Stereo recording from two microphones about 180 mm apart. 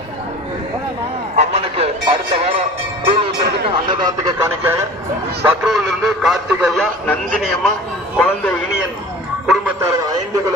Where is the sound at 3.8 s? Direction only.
25° right (ahead or behind).